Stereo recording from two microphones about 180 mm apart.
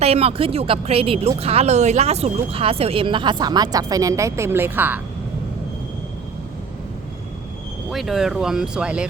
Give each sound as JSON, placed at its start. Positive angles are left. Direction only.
{"t": 0.0, "sound": "speech", "side_deg": -35}
{"t": 7.9, "sound": "speech", "side_deg": 0}